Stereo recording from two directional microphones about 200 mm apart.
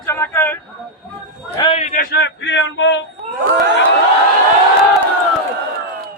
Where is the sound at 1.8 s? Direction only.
45° left (ahead or behind); by 3.0 s 65° left (ahead or behind).